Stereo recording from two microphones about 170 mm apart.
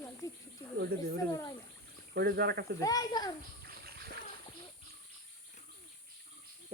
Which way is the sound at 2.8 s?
20° left (ahead or behind).